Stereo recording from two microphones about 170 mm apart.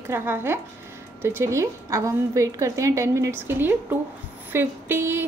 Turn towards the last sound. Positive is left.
turn(degrees=-15)  # may be behind; listen again after turning